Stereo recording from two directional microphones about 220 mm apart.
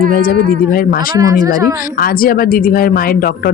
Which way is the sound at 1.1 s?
15° right (ahead or behind).